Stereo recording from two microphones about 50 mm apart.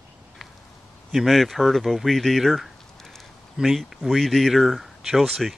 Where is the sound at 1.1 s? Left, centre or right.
Centre.